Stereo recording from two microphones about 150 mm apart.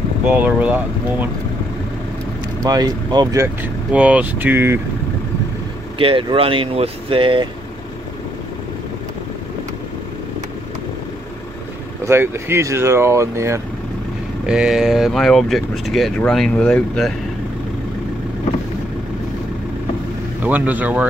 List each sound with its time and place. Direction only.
0.2 s speech: 10° right (ahead or behind)
2.6 s speech: 25° right (ahead or behind)
3.9 s speech: 10° right (ahead or behind)
5.9 s speech: 35° right (ahead or behind)
12.0 s speech: 15° right (ahead or behind)
14.4 s speech: 5° right (ahead or behind)
20.4 s speech: 10° right (ahead or behind)